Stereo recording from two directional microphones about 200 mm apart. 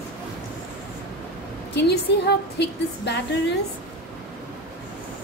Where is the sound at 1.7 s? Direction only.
55° left (ahead or behind).